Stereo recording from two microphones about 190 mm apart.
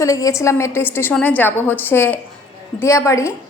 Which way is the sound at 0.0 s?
15° left (ahead or behind).